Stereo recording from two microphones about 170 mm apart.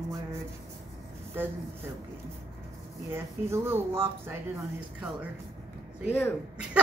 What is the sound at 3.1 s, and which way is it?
Speech, 15° right (ahead or behind).